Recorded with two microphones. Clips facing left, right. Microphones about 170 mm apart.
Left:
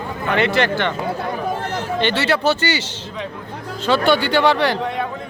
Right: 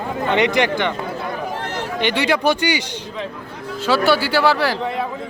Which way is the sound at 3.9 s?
5° right (ahead or behind).